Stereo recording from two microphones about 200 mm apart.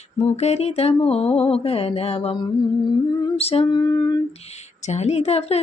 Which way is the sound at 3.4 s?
30° left (ahead or behind).